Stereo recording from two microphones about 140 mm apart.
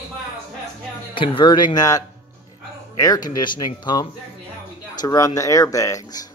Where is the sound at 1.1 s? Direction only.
35° left (ahead or behind).